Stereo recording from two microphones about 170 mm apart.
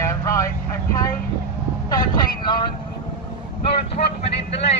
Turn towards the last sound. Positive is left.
turn(degrees=40)  # may be behind; listen again after turning